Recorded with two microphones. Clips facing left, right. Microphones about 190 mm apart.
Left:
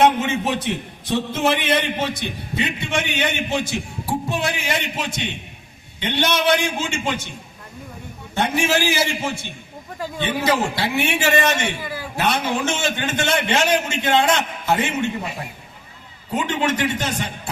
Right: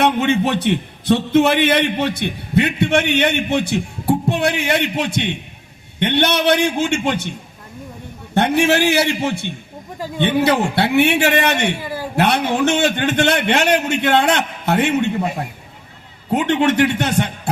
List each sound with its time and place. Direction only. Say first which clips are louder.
0.0 s a man's voice: right 2 dB; 65° right (ahead or behind)
8.4 s a man's voice: right 5 dB; 65° right (ahead or behind)